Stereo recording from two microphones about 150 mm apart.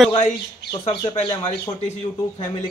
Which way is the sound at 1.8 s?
50° left (ahead or behind).